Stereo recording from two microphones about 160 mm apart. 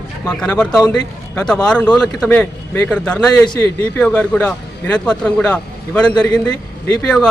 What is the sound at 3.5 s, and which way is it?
A man's voice, 20° left (ahead or behind).